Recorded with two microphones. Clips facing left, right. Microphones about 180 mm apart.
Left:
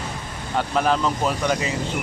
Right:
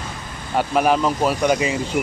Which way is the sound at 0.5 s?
15° right (ahead or behind).